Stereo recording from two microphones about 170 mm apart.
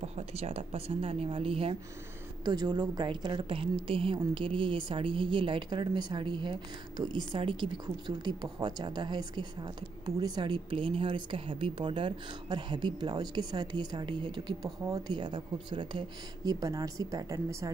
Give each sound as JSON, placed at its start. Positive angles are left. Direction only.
{"t": 0.0, "sound": "a woman's voice", "side_deg": -40}
{"t": 2.4, "sound": "a woman's voice", "side_deg": -25}